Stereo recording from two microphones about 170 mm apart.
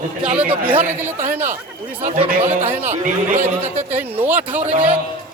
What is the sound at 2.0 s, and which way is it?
Speech, 40° right (ahead or behind).